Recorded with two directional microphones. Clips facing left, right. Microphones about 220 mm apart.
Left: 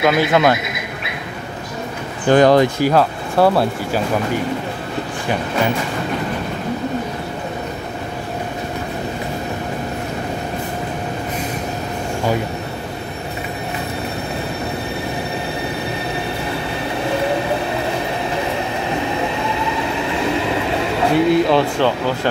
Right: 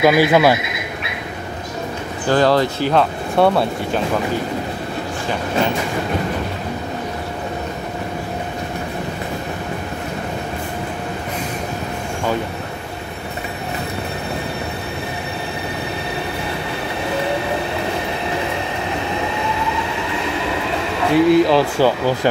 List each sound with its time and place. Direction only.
0.0 s speech: 10° right (ahead or behind)
2.2 s speech: 15° left (ahead or behind)
2.9 s speech: 5° left (ahead or behind)
21.1 s speech: centre (ahead or behind)